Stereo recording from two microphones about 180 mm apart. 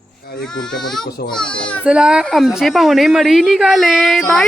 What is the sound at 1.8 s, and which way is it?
A woman's voice, 5° right (ahead or behind).